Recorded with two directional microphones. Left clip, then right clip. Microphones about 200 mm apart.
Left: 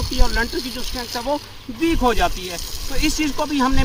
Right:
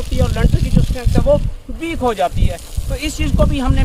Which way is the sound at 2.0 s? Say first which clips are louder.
Right 6 dB; 20° right (ahead or behind).